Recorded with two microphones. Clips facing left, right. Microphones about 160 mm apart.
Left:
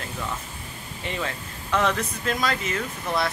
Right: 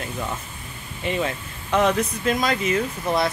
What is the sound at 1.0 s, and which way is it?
Speech, 20° right (ahead or behind).